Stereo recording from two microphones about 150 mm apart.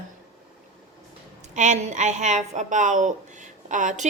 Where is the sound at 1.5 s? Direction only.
50° right (ahead or behind).